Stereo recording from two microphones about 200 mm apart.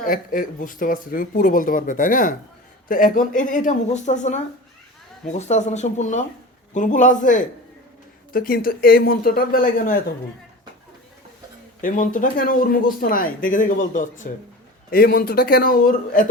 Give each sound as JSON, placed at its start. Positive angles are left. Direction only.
{"t": 0.0, "sound": "speech", "side_deg": 45}
{"t": 11.8, "sound": "speech", "side_deg": 40}